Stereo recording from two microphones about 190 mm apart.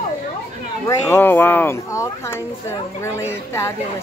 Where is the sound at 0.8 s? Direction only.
10° left (ahead or behind).